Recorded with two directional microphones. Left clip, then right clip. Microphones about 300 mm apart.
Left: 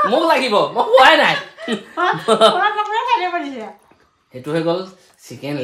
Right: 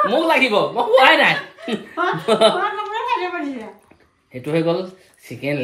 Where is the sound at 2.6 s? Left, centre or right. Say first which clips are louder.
Left 5 dB; left.